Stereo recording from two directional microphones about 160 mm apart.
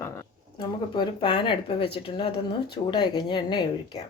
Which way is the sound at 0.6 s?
30° left (ahead or behind).